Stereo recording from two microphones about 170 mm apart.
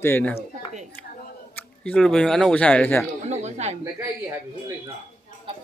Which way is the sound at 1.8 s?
5° left (ahead or behind).